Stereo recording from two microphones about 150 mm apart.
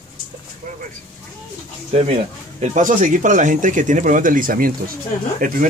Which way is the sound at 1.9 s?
45° right (ahead or behind).